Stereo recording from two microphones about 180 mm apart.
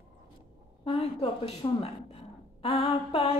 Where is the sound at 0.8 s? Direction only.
30° left (ahead or behind).